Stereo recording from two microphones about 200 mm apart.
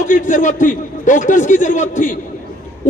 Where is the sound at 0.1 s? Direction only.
40° left (ahead or behind).